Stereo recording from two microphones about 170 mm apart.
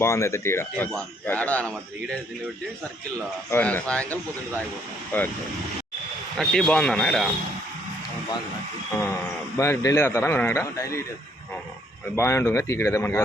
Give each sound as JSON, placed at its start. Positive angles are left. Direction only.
{"t": 0.0, "sound": "a man's voice", "side_deg": 15}
{"t": 3.5, "sound": "speech", "side_deg": 10}
{"t": 6.3, "sound": "a man's voice", "side_deg": 5}
{"t": 9.6, "sound": "speech", "side_deg": 15}
{"t": 12.1, "sound": "speech", "side_deg": 15}